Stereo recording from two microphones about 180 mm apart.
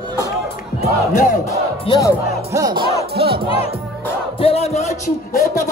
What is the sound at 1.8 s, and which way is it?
Speech, 20° left (ahead or behind).